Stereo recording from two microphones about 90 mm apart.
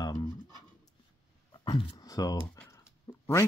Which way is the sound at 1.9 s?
40° left (ahead or behind).